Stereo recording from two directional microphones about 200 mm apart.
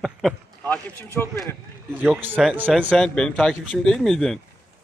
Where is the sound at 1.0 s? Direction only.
10° left (ahead or behind).